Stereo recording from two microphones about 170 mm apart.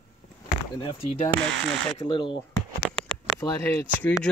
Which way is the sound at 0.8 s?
35° left (ahead or behind).